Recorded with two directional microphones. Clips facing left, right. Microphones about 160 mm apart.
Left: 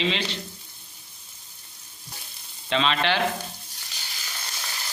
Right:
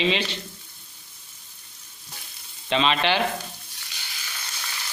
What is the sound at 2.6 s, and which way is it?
Speech, 15° right (ahead or behind).